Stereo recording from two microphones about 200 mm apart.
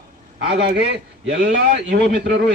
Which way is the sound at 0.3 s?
55° right (ahead or behind).